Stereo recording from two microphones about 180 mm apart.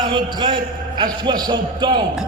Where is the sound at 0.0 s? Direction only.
25° right (ahead or behind).